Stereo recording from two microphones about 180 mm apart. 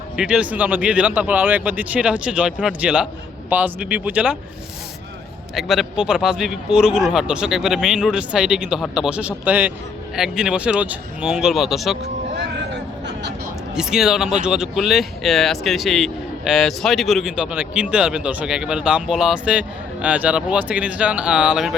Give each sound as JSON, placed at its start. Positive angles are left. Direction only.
{"t": 0.2, "sound": "speech", "side_deg": -5}
{"t": 5.5, "sound": "speech", "side_deg": 0}
{"t": 13.7, "sound": "speech", "side_deg": -5}